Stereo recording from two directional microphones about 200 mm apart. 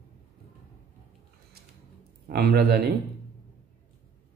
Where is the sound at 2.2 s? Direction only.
50° right (ahead or behind).